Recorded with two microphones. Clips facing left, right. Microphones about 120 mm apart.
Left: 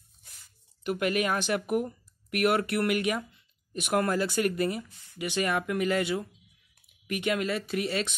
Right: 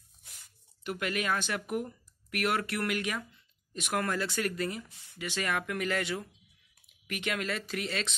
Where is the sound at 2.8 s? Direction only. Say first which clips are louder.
Left 6 dB; 15° left (ahead or behind).